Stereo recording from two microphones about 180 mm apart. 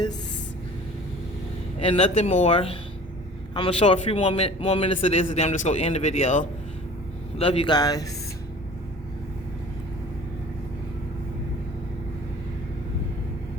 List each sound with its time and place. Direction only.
1.8 s a man's voice: 30° left (ahead or behind)